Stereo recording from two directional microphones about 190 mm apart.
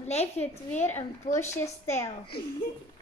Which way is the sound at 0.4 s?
10° left (ahead or behind).